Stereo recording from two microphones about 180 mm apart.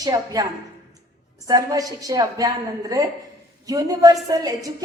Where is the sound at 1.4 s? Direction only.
20° right (ahead or behind).